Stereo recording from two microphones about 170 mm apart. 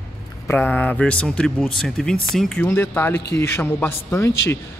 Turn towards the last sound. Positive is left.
turn(degrees=15)  # may be behind; listen again after turning